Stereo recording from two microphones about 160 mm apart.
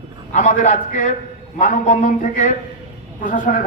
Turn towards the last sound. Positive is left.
turn(degrees=55)  # may be behind; listen again after turning